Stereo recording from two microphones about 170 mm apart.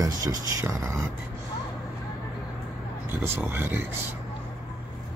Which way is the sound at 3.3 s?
10° right (ahead or behind).